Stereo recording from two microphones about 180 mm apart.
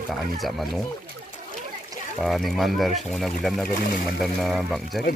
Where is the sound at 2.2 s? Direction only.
Centre (ahead or behind).